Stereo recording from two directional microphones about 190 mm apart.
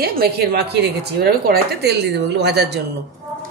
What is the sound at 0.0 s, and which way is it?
A woman's voice, 55° right (ahead or behind).